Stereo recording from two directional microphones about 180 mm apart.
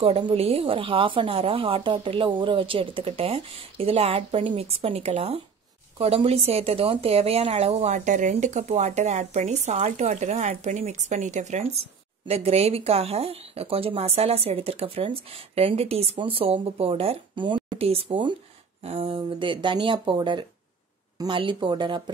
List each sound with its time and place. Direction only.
0.0 s speech: 30° right (ahead or behind)